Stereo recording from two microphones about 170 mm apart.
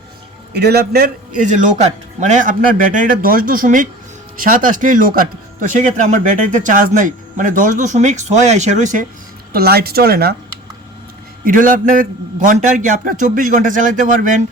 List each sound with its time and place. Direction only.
0.5 s a man's voice: 70° right (ahead or behind)
1.4 s speech: 45° right (ahead or behind)
9.5 s speech: 65° right (ahead or behind)
11.4 s speech: 55° right (ahead or behind)